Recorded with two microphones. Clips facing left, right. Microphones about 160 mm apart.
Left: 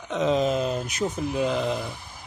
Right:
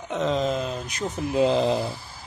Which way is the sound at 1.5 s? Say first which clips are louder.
Right 4 dB; 35° right (ahead or behind).